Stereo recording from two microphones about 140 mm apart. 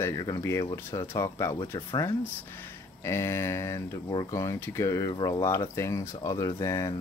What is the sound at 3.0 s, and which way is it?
Speech, 20° left (ahead or behind).